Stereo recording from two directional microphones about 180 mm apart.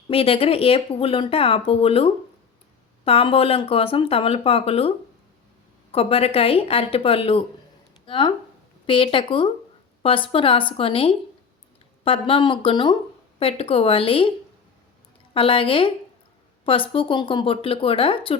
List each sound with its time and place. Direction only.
0.1 s speech: 30° left (ahead or behind)